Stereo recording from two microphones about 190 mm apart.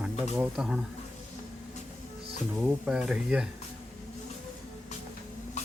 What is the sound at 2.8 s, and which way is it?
Speech, 5° right (ahead or behind).